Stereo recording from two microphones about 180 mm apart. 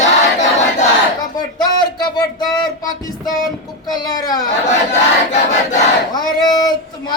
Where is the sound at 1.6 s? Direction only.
25° left (ahead or behind).